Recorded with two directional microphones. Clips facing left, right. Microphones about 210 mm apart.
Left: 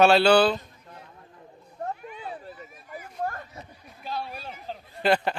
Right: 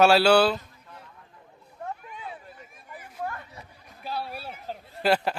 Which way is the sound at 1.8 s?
40° left (ahead or behind).